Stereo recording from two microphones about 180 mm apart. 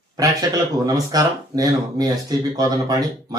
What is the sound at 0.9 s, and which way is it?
Speech, 20° right (ahead or behind).